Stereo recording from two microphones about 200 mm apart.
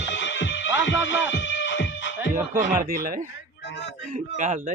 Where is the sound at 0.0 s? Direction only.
65° left (ahead or behind).